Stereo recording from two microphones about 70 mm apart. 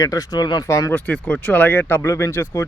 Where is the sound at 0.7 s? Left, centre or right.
Left.